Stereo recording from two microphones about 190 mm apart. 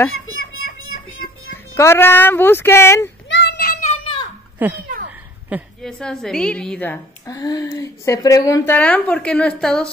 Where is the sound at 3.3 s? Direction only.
60° left (ahead or behind).